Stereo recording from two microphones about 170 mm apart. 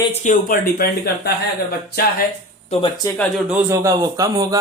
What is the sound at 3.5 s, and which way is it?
A man's voice, 15° right (ahead or behind).